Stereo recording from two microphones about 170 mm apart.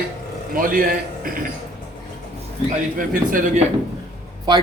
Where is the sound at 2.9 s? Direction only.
55° right (ahead or behind).